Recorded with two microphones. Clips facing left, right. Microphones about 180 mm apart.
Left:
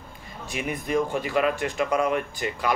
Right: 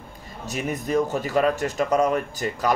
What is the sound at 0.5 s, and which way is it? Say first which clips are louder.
Speech: right 2 dB; 40° right (ahead or behind).